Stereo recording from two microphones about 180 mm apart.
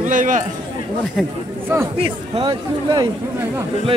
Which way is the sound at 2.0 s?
25° right (ahead or behind).